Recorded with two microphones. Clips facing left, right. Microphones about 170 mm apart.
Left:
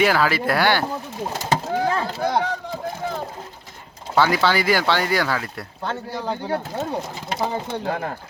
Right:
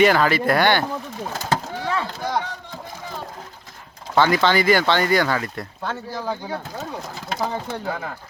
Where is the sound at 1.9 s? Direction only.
40° left (ahead or behind).